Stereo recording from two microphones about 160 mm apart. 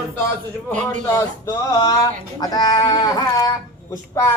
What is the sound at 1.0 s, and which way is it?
Speech, 15° left (ahead or behind).